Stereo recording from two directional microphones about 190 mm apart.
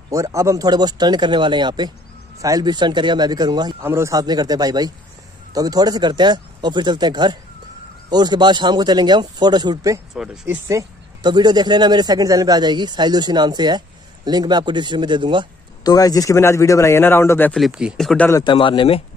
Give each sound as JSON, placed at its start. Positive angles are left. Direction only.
{"t": 0.1, "sound": "speech", "side_deg": -15}
{"t": 10.1, "sound": "speech", "side_deg": -5}
{"t": 10.5, "sound": "speech", "side_deg": -15}
{"t": 15.8, "sound": "a man's voice", "side_deg": 20}
{"t": 18.4, "sound": "a man's voice", "side_deg": 25}